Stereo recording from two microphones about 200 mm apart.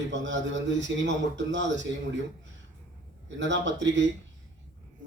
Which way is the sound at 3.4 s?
65° right (ahead or behind).